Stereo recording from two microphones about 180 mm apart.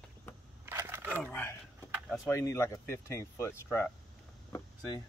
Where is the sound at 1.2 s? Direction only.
10° left (ahead or behind).